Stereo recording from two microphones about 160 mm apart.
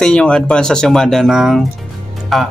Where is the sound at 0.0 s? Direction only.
5° left (ahead or behind).